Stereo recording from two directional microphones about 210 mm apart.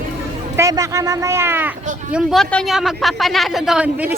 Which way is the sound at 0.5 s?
15° right (ahead or behind).